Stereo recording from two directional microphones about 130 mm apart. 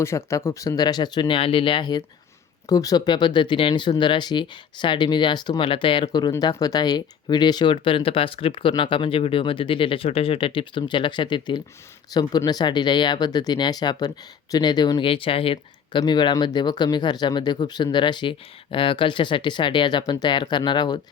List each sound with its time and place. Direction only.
0.0 s speech: 20° left (ahead or behind)
15.0 s speech: 45° left (ahead or behind)